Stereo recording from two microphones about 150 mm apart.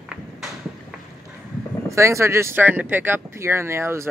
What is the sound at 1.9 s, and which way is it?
Speech, 20° right (ahead or behind).